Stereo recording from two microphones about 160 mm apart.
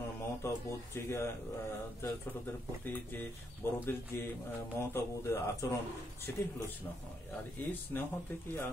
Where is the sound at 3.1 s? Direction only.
15° left (ahead or behind).